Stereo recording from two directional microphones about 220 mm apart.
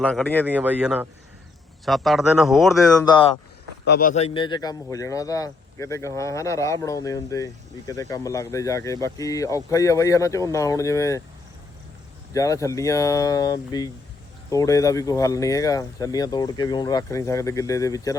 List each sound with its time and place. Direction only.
0.0 s speech: 5° left (ahead or behind)
0.4 s speech: 5° right (ahead or behind)
3.8 s a man's voice: 45° left (ahead or behind)
4.1 s speech: 25° left (ahead or behind)
12.3 s speech: 15° left (ahead or behind)